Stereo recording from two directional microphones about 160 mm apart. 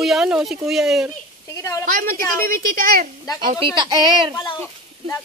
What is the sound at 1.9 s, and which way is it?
A woman's voice, 60° right (ahead or behind).